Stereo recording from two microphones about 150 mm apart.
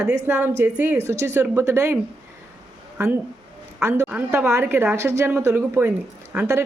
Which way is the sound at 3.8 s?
15° right (ahead or behind).